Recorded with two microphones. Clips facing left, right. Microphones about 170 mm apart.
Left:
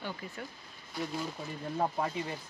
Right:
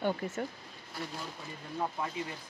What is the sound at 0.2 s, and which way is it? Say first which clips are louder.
Speech: right 7 dB; 50° right (ahead or behind).